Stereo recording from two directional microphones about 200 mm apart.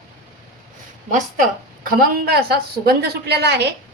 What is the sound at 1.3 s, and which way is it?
A woman's voice, 45° right (ahead or behind).